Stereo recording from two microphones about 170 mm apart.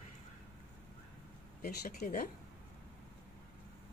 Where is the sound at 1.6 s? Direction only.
60° left (ahead or behind).